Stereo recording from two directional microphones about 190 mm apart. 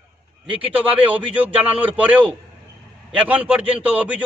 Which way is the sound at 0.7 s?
10° right (ahead or behind).